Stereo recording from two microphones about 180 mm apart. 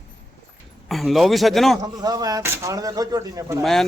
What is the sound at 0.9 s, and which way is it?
Speech, centre (ahead or behind).